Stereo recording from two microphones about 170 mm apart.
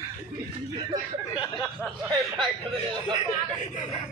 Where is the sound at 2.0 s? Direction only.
25° right (ahead or behind).